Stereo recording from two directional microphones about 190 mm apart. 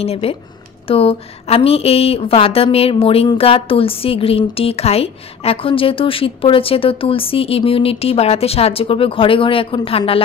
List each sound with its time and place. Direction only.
0.0 s speech: 30° left (ahead or behind)